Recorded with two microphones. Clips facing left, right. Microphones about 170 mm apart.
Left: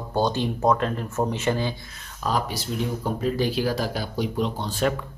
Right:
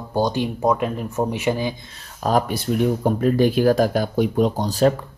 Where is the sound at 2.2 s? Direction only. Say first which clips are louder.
Right 6 dB; 50° right (ahead or behind).